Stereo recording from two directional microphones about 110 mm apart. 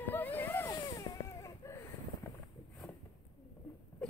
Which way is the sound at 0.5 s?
30° left (ahead or behind).